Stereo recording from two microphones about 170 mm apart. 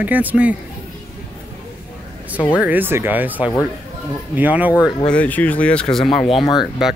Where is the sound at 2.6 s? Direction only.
10° right (ahead or behind).